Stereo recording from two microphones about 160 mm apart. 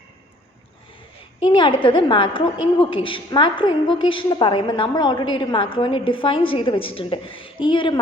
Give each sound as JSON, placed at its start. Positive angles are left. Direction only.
{"t": 1.5, "sound": "a woman's voice", "side_deg": 30}